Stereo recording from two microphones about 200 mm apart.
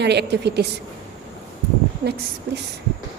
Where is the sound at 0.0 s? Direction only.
55° right (ahead or behind).